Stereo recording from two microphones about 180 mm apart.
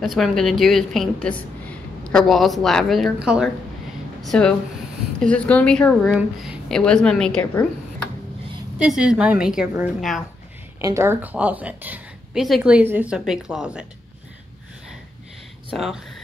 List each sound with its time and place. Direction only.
0.0 s a woman's voice: centre (ahead or behind)
8.7 s a woman's voice: 5° right (ahead or behind)
10.8 s a woman's voice: 15° right (ahead or behind)
15.7 s a woman's voice: centre (ahead or behind)